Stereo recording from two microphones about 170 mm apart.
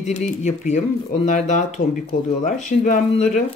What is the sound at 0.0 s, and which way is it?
Speech, 45° left (ahead or behind).